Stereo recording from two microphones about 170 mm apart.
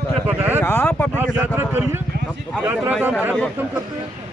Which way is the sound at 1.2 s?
15° right (ahead or behind).